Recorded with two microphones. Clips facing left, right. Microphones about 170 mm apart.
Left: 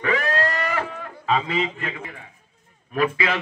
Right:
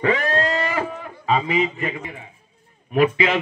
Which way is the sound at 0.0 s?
30° right (ahead or behind).